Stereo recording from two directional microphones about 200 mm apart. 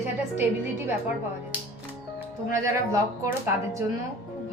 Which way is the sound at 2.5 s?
15° right (ahead or behind).